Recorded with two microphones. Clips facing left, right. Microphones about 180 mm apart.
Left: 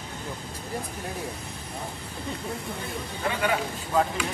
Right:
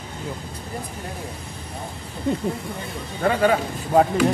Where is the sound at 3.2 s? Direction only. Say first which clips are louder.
Right 8 dB; 45° right (ahead or behind).